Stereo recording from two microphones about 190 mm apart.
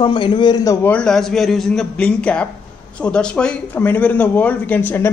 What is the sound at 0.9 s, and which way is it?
Speech, 5° left (ahead or behind).